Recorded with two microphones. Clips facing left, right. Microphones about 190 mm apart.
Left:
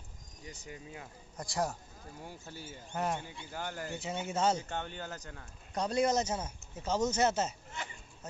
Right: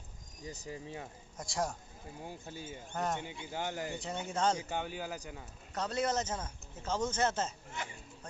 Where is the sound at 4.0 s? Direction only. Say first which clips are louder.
Left 4 dB; 5° left (ahead or behind).